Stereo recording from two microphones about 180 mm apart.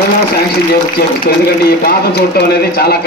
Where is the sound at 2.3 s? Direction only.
60° left (ahead or behind).